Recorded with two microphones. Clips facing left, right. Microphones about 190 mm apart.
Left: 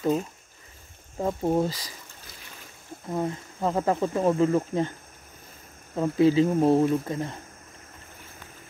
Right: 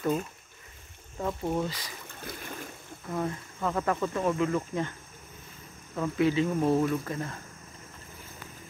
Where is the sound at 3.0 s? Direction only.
25° left (ahead or behind).